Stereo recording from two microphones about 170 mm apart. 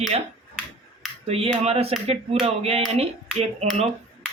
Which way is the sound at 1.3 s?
35° right (ahead or behind).